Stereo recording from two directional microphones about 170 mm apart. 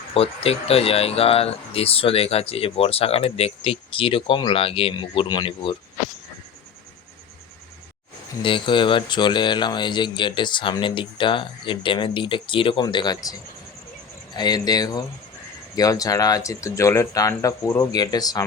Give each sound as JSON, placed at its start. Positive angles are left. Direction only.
{"t": 0.1, "sound": "speech", "side_deg": 35}
{"t": 8.4, "sound": "speech", "side_deg": 30}
{"t": 14.3, "sound": "speech", "side_deg": 25}